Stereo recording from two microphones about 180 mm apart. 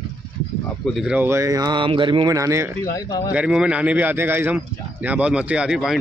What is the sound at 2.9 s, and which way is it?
Speech, 20° left (ahead or behind).